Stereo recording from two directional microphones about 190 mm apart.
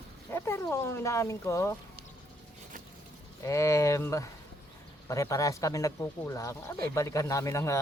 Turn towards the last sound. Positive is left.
turn(degrees=15)  # may be behind; listen again after turning